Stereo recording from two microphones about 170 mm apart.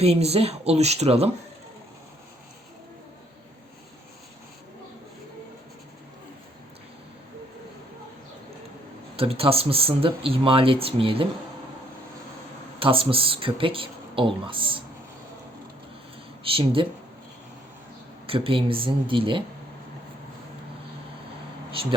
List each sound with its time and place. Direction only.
0.0 s speech: 35° right (ahead or behind)
9.1 s speech: 35° right (ahead or behind)
12.8 s speech: 30° right (ahead or behind)
16.4 s speech: 30° right (ahead or behind)
18.3 s speech: 30° right (ahead or behind)